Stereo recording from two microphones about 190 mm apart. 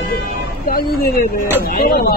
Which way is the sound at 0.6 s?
50° left (ahead or behind).